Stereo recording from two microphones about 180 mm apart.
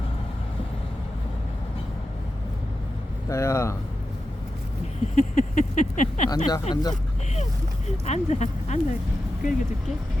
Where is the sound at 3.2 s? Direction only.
15° left (ahead or behind).